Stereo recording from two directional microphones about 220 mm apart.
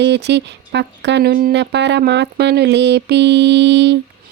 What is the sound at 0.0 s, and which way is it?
Speech, 50° right (ahead or behind).